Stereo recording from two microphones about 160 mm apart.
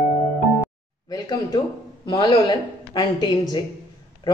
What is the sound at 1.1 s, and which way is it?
A woman's voice, 20° left (ahead or behind).